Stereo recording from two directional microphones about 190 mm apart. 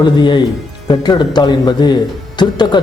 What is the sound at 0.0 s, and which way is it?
A man's voice, 25° left (ahead or behind).